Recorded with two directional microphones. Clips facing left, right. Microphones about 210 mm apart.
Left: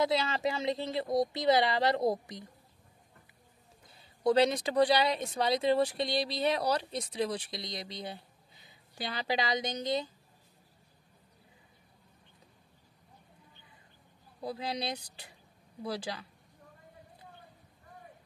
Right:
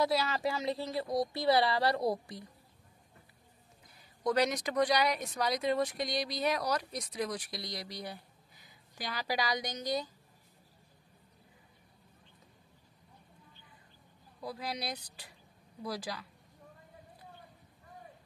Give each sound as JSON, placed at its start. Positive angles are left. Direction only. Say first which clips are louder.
{"t": 0.0, "sound": "speech", "louder": "left 1 dB", "side_deg": 25}
{"t": 3.9, "sound": "speech", "louder": "left 5 dB", "side_deg": 30}
{"t": 14.4, "sound": "speech", "louder": "left 3 dB", "side_deg": 25}